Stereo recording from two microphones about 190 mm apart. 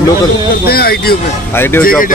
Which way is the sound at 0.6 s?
55° left (ahead or behind).